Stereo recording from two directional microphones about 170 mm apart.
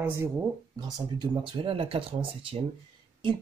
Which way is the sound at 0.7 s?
25° right (ahead or behind).